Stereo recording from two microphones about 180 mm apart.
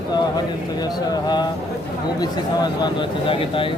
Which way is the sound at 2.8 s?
30° left (ahead or behind).